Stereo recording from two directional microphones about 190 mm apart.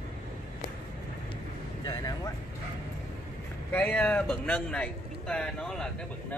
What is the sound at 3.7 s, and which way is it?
A man's voice, 10° left (ahead or behind).